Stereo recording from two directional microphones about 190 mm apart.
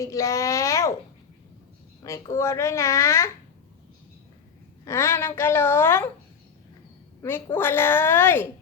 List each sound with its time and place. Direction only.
0.0 s a woman's voice: 15° left (ahead or behind)
2.0 s a woman's voice: 15° left (ahead or behind)
4.9 s a woman's voice: 15° left (ahead or behind)
7.2 s a woman's voice: 15° left (ahead or behind)